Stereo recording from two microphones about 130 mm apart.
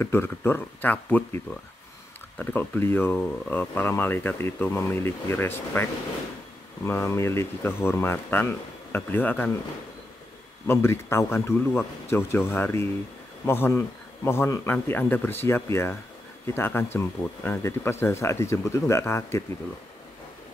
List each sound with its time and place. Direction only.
0.0 s speech: 15° left (ahead or behind)
2.3 s speech: 15° left (ahead or behind)
10.7 s speech: 20° left (ahead or behind)